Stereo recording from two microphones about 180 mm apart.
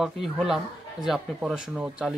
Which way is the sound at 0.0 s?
Centre (ahead or behind).